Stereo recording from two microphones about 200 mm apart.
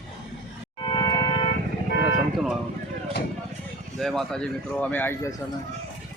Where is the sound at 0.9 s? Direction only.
20° left (ahead or behind).